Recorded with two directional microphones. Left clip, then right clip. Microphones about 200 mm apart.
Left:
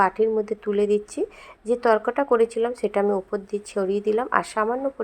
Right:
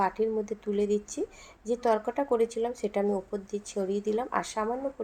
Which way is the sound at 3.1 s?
30° left (ahead or behind).